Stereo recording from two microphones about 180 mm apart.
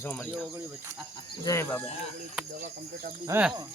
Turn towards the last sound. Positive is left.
turn(degrees=-15)  # may be behind; listen again after turning